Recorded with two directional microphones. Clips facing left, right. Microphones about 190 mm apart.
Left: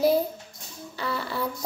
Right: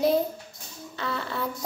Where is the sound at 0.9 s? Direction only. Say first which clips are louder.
Left 1 dB; 5° left (ahead or behind).